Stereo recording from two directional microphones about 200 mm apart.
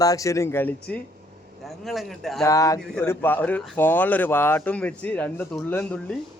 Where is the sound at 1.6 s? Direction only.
Centre (ahead or behind).